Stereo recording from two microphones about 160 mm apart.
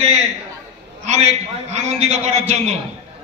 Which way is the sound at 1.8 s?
45° right (ahead or behind).